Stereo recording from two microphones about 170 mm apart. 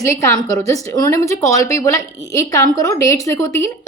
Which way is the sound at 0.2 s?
20° left (ahead or behind).